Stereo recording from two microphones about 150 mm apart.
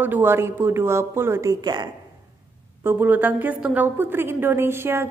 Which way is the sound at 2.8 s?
10° right (ahead or behind).